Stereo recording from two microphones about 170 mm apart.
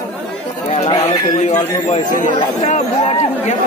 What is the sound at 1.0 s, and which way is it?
Speech, 40° left (ahead or behind).